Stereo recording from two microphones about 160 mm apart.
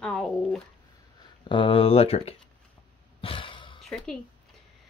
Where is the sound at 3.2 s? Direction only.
35° left (ahead or behind).